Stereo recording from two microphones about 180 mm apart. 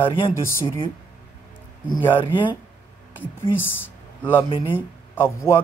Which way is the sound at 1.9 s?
30° left (ahead or behind).